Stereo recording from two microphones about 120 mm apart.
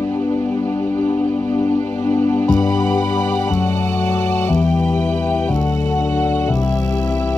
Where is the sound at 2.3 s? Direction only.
15° left (ahead or behind).